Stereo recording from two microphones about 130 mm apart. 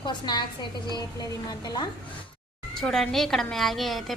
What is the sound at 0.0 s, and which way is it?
A woman's voice, 35° left (ahead or behind).